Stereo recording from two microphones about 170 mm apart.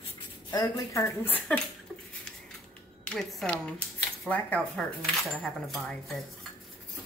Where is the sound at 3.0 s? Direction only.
5° left (ahead or behind).